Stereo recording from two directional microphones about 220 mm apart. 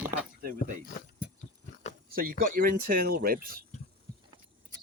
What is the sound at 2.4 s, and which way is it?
Speech, 40° right (ahead or behind).